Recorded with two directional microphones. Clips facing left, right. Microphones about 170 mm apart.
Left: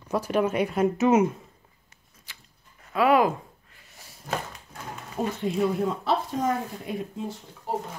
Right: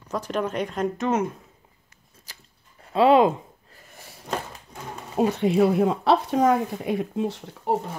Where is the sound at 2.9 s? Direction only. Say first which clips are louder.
Right 4 dB; 25° right (ahead or behind).